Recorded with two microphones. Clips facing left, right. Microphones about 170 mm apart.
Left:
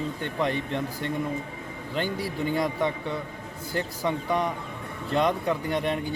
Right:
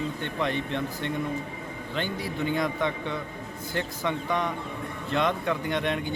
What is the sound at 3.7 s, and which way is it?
Speech, 35° left (ahead or behind).